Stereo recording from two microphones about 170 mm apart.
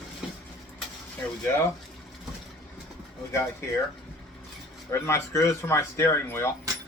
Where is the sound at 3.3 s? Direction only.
15° left (ahead or behind).